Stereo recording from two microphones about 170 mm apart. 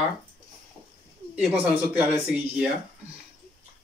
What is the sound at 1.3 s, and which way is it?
Speech, 10° right (ahead or behind).